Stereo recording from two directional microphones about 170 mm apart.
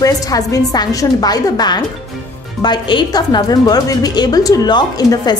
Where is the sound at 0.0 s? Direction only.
20° left (ahead or behind).